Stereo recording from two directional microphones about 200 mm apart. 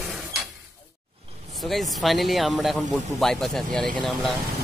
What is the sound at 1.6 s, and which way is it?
Speech, centre (ahead or behind).